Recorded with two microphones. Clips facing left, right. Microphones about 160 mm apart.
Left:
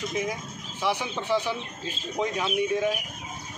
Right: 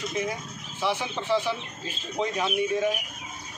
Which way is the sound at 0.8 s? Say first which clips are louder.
Even; 15° left (ahead or behind).